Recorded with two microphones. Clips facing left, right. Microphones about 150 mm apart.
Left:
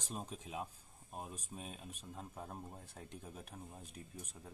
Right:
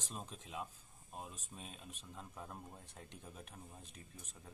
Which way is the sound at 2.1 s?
35° left (ahead or behind).